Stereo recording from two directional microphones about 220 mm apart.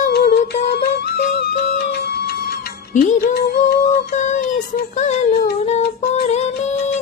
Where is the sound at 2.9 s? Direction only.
40° left (ahead or behind).